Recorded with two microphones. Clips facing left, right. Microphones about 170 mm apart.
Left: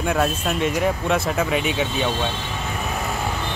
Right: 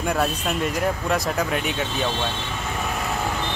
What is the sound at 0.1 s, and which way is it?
Speech, centre (ahead or behind).